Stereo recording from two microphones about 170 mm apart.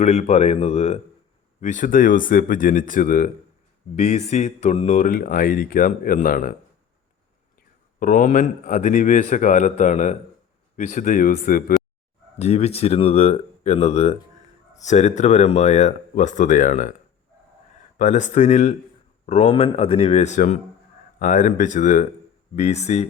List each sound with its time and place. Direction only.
0.0 s speech: 40° left (ahead or behind)
1.6 s speech: 50° left (ahead or behind)
7.9 s speech: 50° left (ahead or behind)
12.4 s speech: 40° left (ahead or behind)
17.9 s speech: 45° left (ahead or behind)